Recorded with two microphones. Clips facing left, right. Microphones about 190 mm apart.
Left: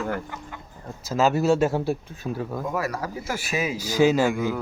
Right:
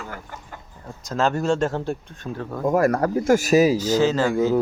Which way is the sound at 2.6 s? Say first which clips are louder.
Right 13 dB; 50° right (ahead or behind).